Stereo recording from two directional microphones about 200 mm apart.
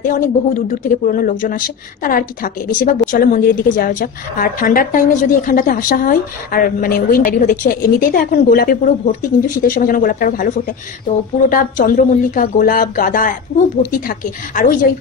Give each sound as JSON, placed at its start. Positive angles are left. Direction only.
{"t": 0.0, "sound": "a woman's voice", "side_deg": 40}